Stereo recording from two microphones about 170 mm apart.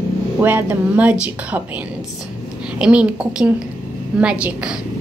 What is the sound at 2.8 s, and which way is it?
Speech, 5° right (ahead or behind).